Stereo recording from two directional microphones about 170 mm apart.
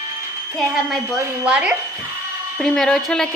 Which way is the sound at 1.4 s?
10° right (ahead or behind).